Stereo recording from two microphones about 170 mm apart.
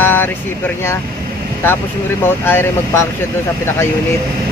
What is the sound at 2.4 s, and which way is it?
Speech, 15° left (ahead or behind).